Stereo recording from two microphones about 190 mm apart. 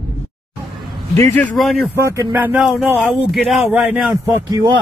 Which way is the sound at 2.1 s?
10° right (ahead or behind).